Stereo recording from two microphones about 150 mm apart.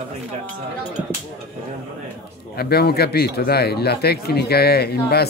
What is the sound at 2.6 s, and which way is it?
Speech, 90° left.